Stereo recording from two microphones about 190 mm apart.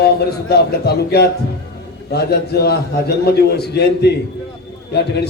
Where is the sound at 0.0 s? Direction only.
55° left (ahead or behind).